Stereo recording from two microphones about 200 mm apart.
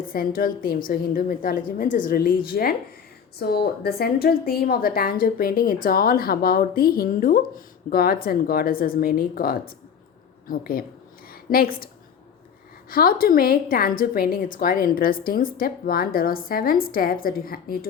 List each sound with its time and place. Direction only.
0.1 s a woman's voice: 45° left (ahead or behind)
12.9 s a woman's voice: 45° left (ahead or behind)